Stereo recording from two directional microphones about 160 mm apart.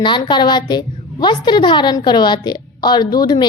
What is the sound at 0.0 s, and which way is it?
A woman's voice, 30° left (ahead or behind).